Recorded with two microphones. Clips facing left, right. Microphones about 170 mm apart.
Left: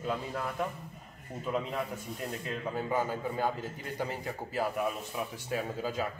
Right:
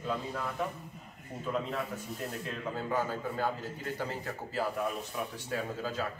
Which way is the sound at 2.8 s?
15° left (ahead or behind).